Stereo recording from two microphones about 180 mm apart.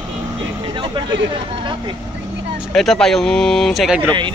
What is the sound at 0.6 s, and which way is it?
Vehicle, 25° right (ahead or behind).